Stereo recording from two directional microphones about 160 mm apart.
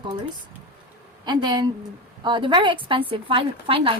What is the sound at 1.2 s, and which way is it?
Speech, 30° right (ahead or behind).